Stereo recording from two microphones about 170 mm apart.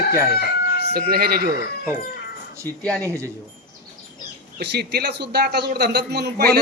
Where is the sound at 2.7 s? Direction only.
10° left (ahead or behind).